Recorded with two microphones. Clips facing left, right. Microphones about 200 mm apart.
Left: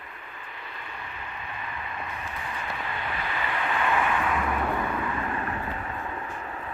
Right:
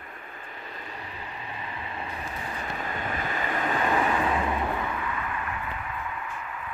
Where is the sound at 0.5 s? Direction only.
40° right (ahead or behind).